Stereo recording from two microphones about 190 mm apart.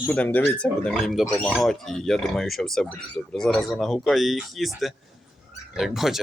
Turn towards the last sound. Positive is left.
turn(degrees=0)  # may be behind; listen again after turning